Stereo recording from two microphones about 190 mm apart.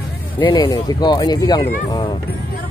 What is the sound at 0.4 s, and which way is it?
Speech, 25° left (ahead or behind).